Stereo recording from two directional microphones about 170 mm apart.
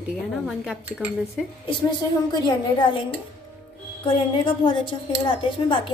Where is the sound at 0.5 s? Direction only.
5° right (ahead or behind).